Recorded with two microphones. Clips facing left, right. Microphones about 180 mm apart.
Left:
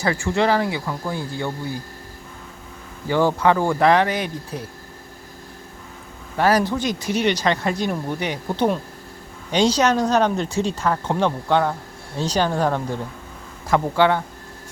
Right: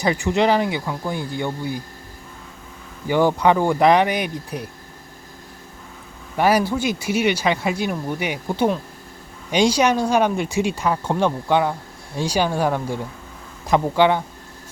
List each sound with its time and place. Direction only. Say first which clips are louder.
0.0 s speech: right 2 dB; 15° right (ahead or behind)
3.1 s speech: right 1 dB; 15° right (ahead or behind)
6.3 s speech: right 1 dB; 10° right (ahead or behind)